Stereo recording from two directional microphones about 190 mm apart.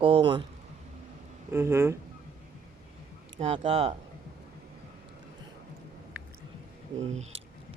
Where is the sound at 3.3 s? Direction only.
30° right (ahead or behind).